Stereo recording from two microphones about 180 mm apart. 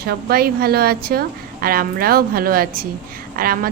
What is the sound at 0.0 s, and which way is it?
Speech, 60° right (ahead or behind).